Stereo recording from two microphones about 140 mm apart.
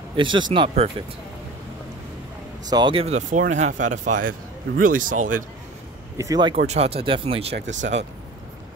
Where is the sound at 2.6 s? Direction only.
30° right (ahead or behind).